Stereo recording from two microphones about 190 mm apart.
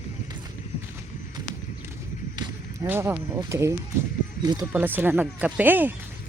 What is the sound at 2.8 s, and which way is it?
Speech, 10° right (ahead or behind).